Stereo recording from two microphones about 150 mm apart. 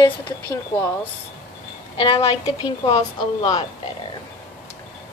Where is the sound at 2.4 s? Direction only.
25° left (ahead or behind).